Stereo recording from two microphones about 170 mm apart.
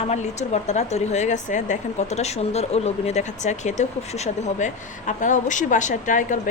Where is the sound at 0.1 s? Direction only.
40° left (ahead or behind).